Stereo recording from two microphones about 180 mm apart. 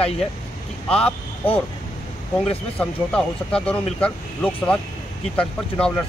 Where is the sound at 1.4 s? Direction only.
30° left (ahead or behind).